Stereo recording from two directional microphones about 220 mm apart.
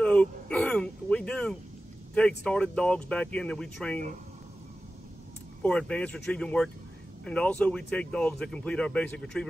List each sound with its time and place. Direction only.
0.0 s a sound: 5° left (ahead or behind)
2.1 s speech: 5° left (ahead or behind)
5.6 s speech: 5° left (ahead or behind)